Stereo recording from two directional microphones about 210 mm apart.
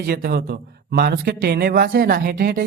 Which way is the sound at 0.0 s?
50° right (ahead or behind).